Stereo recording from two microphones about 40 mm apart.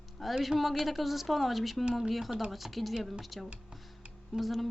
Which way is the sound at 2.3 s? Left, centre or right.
Centre.